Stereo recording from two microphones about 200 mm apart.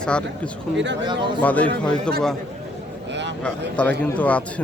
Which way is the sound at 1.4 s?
5° left (ahead or behind).